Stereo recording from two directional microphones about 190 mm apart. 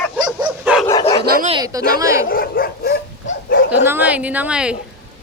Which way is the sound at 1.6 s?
20° right (ahead or behind).